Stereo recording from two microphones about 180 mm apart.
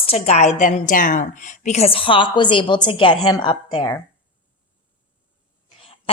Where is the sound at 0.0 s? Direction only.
35° left (ahead or behind).